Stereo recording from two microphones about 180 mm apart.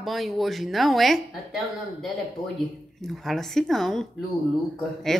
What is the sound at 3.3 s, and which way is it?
Speech, centre (ahead or behind).